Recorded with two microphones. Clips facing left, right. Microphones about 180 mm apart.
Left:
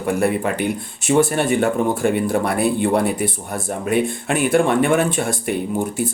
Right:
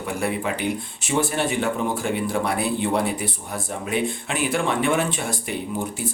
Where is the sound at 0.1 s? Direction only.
50° left (ahead or behind).